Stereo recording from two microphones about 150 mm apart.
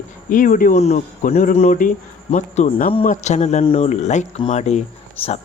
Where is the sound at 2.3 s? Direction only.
50° left (ahead or behind).